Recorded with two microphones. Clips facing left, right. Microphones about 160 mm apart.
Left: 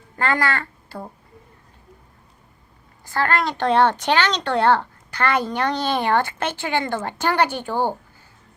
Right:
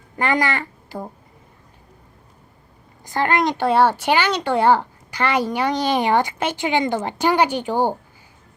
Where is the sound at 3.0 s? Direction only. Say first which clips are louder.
Right 2 dB; 20° right (ahead or behind).